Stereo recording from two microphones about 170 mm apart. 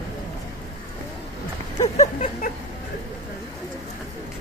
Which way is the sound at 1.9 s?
40° left (ahead or behind).